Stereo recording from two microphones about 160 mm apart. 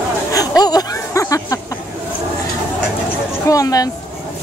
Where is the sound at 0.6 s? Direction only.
25° left (ahead or behind).